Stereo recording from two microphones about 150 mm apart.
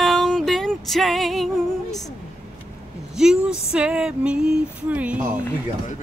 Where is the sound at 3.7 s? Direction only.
5° right (ahead or behind).